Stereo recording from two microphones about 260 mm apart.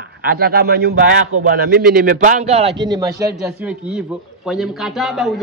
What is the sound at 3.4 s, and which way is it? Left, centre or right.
Speech, centre.